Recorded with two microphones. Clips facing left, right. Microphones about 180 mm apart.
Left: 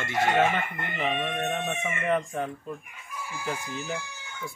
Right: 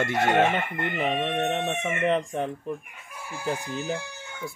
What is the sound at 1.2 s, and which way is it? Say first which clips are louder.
Speech: right 3 dB; 20° right (ahead or behind).